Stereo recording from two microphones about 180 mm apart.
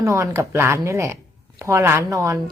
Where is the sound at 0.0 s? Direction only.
15° right (ahead or behind).